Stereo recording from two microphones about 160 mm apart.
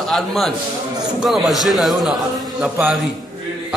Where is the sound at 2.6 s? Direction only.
10° right (ahead or behind).